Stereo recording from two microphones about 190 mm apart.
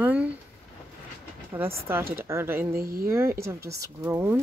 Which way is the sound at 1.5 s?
15° right (ahead or behind).